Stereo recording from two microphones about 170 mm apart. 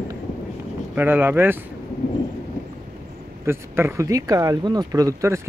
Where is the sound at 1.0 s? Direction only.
10° right (ahead or behind).